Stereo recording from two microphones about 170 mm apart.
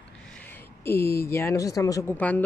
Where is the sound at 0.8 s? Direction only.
15° left (ahead or behind).